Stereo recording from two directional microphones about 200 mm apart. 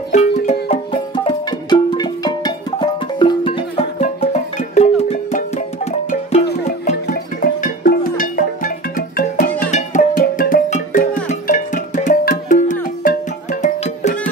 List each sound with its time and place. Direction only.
0.1 s music: 35° left (ahead or behind)
1.1 s music: 20° left (ahead or behind)
6.9 s music: 40° left (ahead or behind)